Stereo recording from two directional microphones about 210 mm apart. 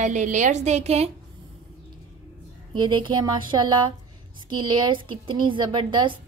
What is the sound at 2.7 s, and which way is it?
A woman's voice, 20° right (ahead or behind).